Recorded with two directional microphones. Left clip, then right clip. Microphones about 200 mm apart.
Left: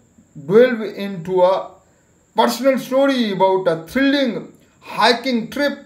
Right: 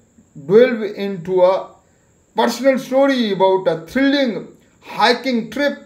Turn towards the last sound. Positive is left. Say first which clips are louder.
# right 1 dB
turn(degrees=5)  # may be behind; listen again after turning